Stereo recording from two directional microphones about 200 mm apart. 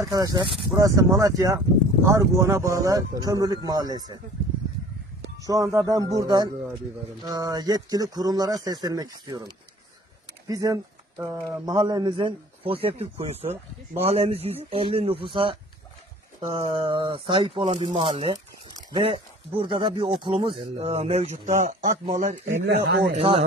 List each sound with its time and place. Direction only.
0.0 s speech: 20° right (ahead or behind)
5.4 s speech: 15° right (ahead or behind); by 22.5 s 40° right (ahead or behind)
22.7 s speech: 60° right (ahead or behind)